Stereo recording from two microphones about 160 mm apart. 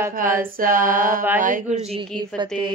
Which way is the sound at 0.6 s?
60° right (ahead or behind).